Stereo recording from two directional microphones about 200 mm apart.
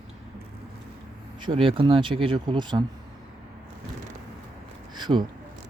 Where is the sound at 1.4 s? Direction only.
25° right (ahead or behind).